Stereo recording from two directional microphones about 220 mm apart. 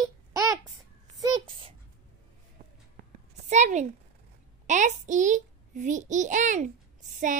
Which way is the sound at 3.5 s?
35° right (ahead or behind).